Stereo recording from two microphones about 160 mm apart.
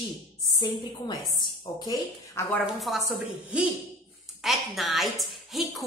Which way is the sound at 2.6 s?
Centre (ahead or behind).